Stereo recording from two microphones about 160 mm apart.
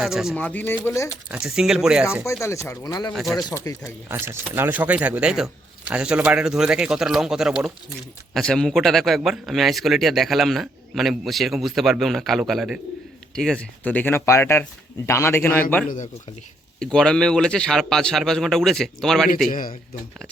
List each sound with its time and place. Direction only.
0.0 s speech: 5° right (ahead or behind)
0.3 s speech: 10° left (ahead or behind)
1.3 s speech: 5° right (ahead or behind)
2.4 s speech: 20° left (ahead or behind)
3.1 s speech: centre (ahead or behind)
3.3 s speech: 20° left (ahead or behind)
4.1 s speech: 15° right (ahead or behind); by 15.6 s 15° left (ahead or behind)
16.8 s speech: 5° left (ahead or behind)
19.5 s a man's voice: 55° left (ahead or behind)